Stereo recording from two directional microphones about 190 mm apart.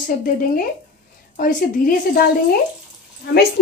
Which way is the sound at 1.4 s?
50° left (ahead or behind).